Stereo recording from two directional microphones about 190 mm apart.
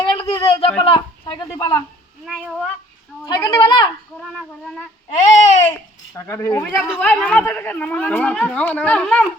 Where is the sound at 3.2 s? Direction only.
20° left (ahead or behind).